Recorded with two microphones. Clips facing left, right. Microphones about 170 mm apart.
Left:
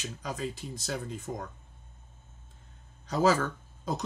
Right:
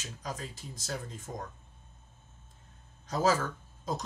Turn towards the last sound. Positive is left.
turn(degrees=65)  # may be behind; listen again after turning